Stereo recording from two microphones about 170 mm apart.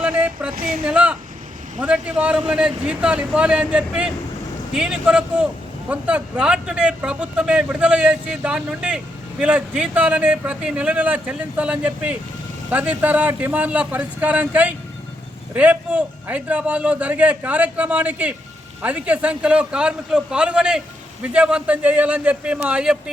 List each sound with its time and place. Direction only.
0.0 s a sound: 10° right (ahead or behind)
0.5 s speech: 55° right (ahead or behind)
0.9 s a man's voice: 5° right (ahead or behind)